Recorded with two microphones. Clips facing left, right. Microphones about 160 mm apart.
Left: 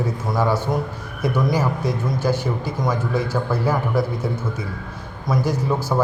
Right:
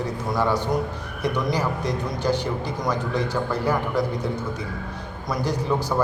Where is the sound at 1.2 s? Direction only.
10° left (ahead or behind).